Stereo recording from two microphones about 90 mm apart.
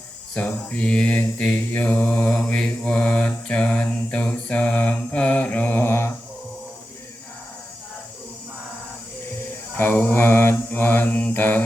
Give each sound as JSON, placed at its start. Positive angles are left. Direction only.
{"t": 0.3, "sound": "mantra", "side_deg": 15}
{"t": 9.7, "sound": "mantra", "side_deg": 20}